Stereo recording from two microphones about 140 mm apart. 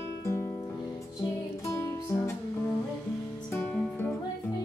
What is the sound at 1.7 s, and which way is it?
Music, 20° left (ahead or behind).